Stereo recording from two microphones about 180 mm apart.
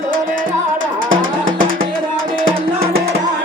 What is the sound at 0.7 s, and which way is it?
Music, 90° right.